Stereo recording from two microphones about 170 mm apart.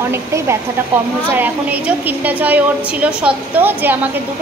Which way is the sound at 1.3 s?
10° right (ahead or behind).